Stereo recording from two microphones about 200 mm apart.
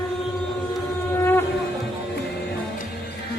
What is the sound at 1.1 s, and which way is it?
Shofar, 10° left (ahead or behind).